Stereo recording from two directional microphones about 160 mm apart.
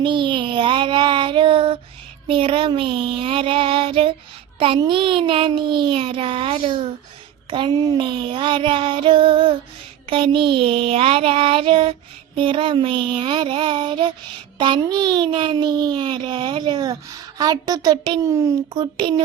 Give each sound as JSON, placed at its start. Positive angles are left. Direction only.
{"t": 0.0, "sound": "child singing", "side_deg": -30}
{"t": 2.2, "sound": "a child's voice", "side_deg": -35}